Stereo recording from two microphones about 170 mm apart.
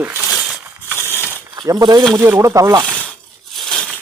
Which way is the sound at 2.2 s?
10° right (ahead or behind).